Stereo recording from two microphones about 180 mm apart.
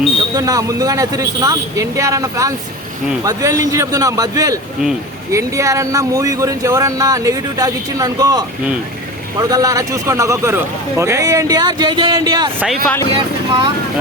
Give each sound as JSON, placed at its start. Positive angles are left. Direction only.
{"t": 0.3, "sound": "speech", "side_deg": -20}